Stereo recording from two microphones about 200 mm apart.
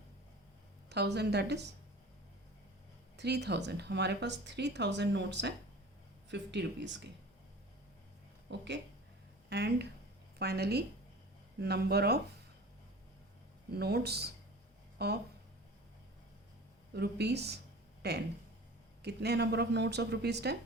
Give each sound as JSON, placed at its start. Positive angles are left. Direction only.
{"t": 0.9, "sound": "speech", "side_deg": -55}
{"t": 3.2, "sound": "speech", "side_deg": -55}
{"t": 8.4, "sound": "speech", "side_deg": -60}
{"t": 13.7, "sound": "speech", "side_deg": -55}
{"t": 16.9, "sound": "speech", "side_deg": -55}